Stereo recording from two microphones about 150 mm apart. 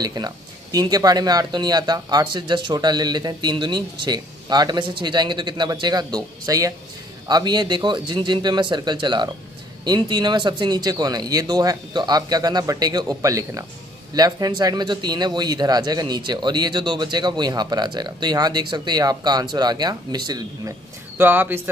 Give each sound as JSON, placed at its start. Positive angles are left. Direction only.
{"t": 0.0, "sound": "speech", "side_deg": -25}
{"t": 21.2, "sound": "speech", "side_deg": -15}